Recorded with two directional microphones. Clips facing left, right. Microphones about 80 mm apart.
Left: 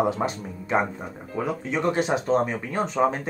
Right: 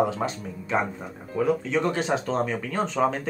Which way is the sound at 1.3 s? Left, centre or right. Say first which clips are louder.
Right 4 dB; left.